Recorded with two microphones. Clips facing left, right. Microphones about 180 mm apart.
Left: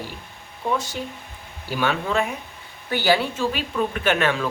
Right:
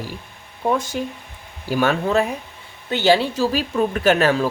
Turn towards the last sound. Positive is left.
turn(degrees=-40)  # may be behind; listen again after turning